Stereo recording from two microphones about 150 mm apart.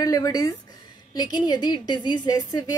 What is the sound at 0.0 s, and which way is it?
A woman's voice, 25° left (ahead or behind).